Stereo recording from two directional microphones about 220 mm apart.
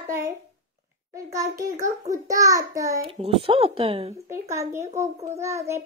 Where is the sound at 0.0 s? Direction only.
10° right (ahead or behind).